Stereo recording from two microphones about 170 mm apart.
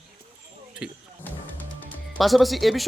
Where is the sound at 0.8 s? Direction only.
5° right (ahead or behind).